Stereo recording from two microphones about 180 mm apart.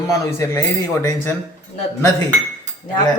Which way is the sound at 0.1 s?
15° left (ahead or behind).